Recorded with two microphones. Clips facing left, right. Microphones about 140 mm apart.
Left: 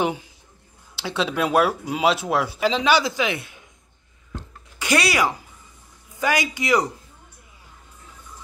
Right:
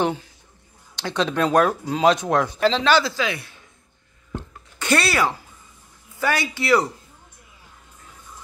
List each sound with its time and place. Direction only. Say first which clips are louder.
0.9 s speech: right 2 dB; 5° left (ahead or behind)
4.7 s speech: even; 10° left (ahead or behind)